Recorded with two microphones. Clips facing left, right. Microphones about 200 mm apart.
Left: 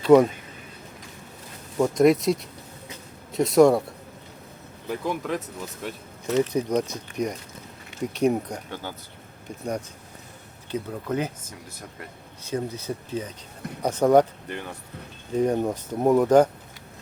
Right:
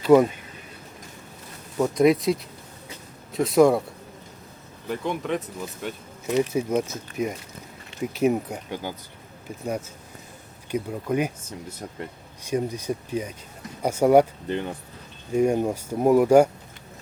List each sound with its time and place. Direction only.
0.0 s speech: centre (ahead or behind)
1.8 s speech: centre (ahead or behind)
4.9 s speech: centre (ahead or behind)
6.2 s speech: 15° right (ahead or behind)
10.7 s speech: 15° right (ahead or behind)
12.5 s speech: 15° right (ahead or behind)
14.4 s speech: 20° right (ahead or behind)
15.3 s speech: 10° right (ahead or behind)